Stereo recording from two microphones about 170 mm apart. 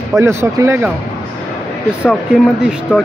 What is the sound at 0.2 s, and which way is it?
Speech, 15° right (ahead or behind).